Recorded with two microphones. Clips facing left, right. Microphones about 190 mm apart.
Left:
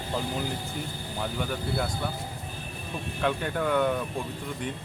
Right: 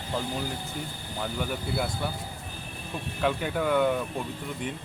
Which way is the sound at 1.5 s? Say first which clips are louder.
Even; 5° right (ahead or behind).